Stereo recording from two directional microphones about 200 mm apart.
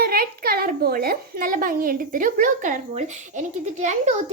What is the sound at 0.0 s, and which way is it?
A child's voice, 50° right (ahead or behind).